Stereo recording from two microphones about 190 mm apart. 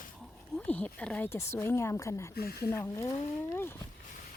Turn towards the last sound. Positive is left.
turn(degrees=10)  # may be behind; listen again after turning